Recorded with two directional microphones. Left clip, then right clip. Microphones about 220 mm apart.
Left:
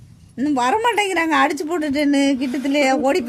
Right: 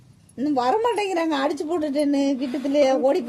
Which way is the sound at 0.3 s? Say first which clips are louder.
Left 3 dB; 35° left (ahead or behind).